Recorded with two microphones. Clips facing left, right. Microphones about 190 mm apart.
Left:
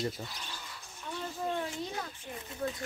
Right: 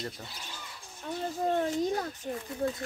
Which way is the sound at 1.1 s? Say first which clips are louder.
Right 6 dB; 40° right (ahead or behind).